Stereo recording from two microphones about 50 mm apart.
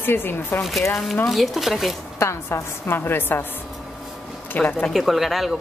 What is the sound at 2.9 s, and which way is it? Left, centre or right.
Speech, left.